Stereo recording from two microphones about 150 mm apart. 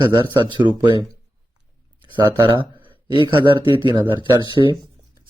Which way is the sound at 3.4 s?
35° left (ahead or behind).